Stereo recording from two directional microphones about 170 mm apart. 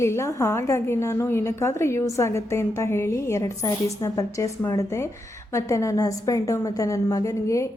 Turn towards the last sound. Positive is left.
turn(degrees=20)  # may be behind; listen again after turning